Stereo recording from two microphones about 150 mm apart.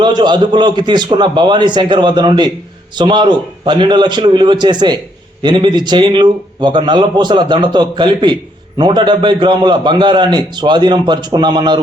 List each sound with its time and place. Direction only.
0.0 s a man's voice: 30° right (ahead or behind)